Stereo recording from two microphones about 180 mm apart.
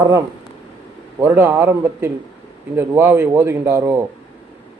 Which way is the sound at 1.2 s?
15° right (ahead or behind).